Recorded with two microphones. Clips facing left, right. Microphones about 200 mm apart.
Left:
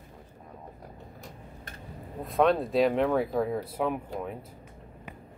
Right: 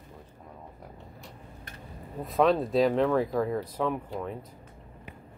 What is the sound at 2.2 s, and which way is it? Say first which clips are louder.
Speech: even; centre (ahead or behind).